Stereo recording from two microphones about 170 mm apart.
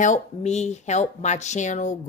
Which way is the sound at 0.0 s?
45° left (ahead or behind).